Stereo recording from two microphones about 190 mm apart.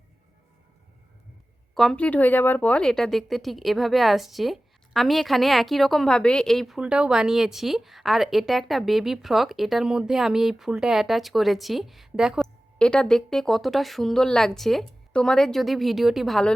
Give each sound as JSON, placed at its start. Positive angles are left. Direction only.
{"t": 1.7, "sound": "speech", "side_deg": 0}